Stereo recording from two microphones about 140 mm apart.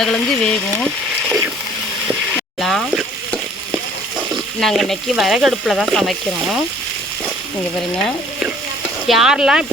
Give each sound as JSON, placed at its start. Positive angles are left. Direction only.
{"t": 0.0, "sound": "speech", "side_deg": 5}
{"t": 2.3, "sound": "frying", "side_deg": 0}
{"t": 4.6, "sound": "speech", "side_deg": 0}
{"t": 9.0, "sound": "speech", "side_deg": -5}